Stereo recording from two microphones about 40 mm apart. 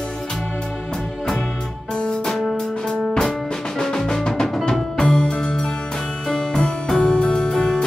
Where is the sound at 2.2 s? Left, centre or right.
Centre.